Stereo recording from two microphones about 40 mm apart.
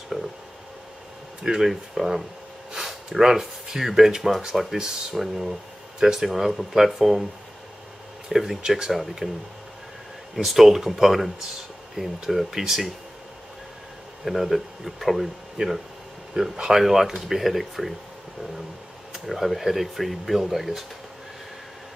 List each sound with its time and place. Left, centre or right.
1.4 s speech: centre
5.9 s speech: centre
6.2 s speech: centre
8.3 s speech: centre
10.3 s speech: centre
14.2 s speech: centre
15.6 s speech: right
16.3 s speech: centre
19.2 s speech: centre